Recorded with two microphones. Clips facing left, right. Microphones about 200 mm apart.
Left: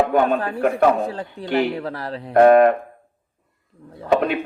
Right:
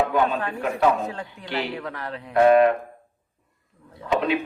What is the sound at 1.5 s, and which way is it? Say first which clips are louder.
Speech: left 9 dB; 50° left (ahead or behind).